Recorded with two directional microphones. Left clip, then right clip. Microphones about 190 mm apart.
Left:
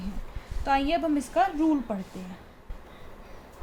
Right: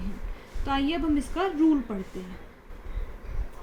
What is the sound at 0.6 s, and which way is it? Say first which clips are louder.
Speech: left 3 dB; 45° left (ahead or behind).